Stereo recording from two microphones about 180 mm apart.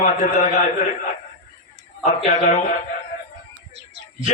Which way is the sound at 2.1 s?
40° left (ahead or behind).